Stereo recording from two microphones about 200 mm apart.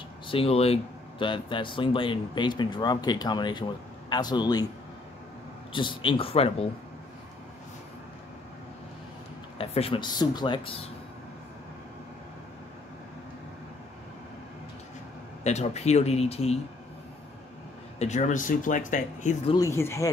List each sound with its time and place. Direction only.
0.3 s speech: 30° left (ahead or behind)
5.7 s speech: 25° left (ahead or behind)
9.6 s speech: 30° left (ahead or behind)
15.4 s speech: 35° left (ahead or behind)
17.9 s speech: 35° left (ahead or behind)
19.5 s speech: 15° left (ahead or behind)